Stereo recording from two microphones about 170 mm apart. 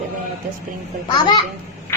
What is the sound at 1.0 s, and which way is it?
Speech, 25° left (ahead or behind).